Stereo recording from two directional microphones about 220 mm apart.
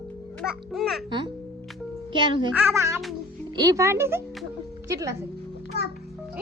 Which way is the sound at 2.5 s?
10° right (ahead or behind).